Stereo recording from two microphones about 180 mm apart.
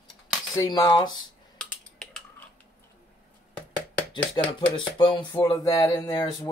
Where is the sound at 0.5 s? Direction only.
25° left (ahead or behind).